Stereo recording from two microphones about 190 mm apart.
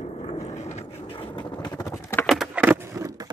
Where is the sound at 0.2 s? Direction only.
35° left (ahead or behind); by 2.2 s 15° left (ahead or behind).